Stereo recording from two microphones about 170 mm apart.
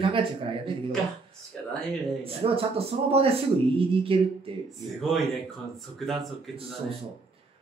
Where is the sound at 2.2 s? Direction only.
35° right (ahead or behind).